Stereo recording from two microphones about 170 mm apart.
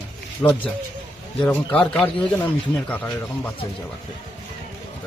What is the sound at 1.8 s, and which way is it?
Speech, 5° left (ahead or behind).